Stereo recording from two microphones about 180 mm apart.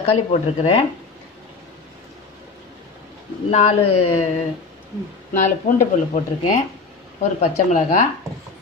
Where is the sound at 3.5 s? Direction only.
35° left (ahead or behind).